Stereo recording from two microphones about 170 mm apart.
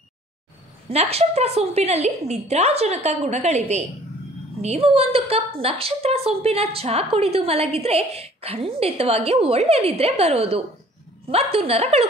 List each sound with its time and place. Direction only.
0.8 s a woman's voice: 35° right (ahead or behind)